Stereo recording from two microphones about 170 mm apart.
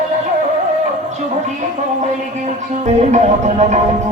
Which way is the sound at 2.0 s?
45° right (ahead or behind).